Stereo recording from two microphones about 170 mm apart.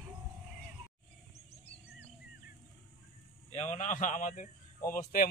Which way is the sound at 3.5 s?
45° left (ahead or behind).